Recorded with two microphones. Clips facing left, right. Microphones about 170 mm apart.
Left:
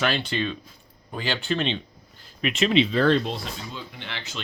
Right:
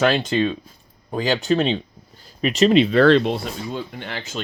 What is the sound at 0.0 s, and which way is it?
Speech, 45° right (ahead or behind).